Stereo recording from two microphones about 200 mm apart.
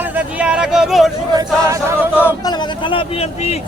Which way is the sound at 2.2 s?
10° left (ahead or behind).